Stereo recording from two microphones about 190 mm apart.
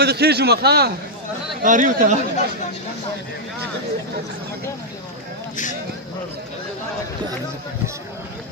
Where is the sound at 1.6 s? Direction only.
40° right (ahead or behind).